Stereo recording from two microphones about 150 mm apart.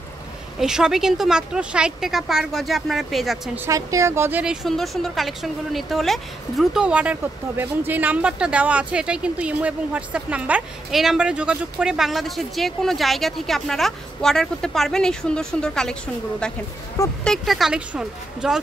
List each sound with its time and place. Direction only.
0.6 s speech: 5° right (ahead or behind)
3.5 s speech: 20° right (ahead or behind)
4.6 s speech: centre (ahead or behind)